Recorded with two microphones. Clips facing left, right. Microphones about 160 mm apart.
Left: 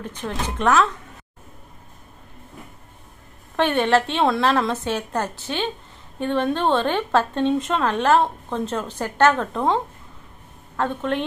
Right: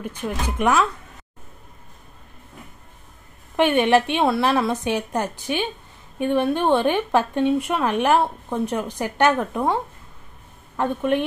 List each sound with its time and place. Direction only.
0.0 s speech: 10° right (ahead or behind)
3.5 s speech: 15° right (ahead or behind)
10.8 s speech: 15° right (ahead or behind)